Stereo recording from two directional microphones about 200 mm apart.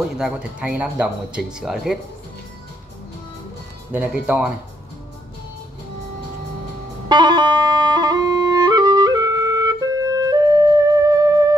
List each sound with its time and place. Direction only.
0.2 s speech: 5° right (ahead or behind)
3.9 s speech: 5° right (ahead or behind)
7.1 s music: 20° right (ahead or behind)